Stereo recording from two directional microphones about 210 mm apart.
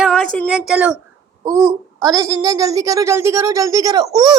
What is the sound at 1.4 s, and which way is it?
A child's voice, 15° right (ahead or behind).